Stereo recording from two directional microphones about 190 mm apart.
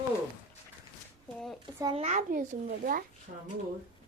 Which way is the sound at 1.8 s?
30° right (ahead or behind).